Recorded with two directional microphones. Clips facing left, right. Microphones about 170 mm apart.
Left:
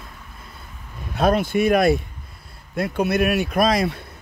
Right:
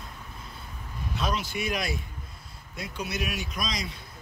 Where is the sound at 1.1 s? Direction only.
55° left (ahead or behind).